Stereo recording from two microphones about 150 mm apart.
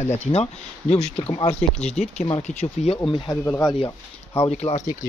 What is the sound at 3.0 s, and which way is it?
Speech, 35° left (ahead or behind).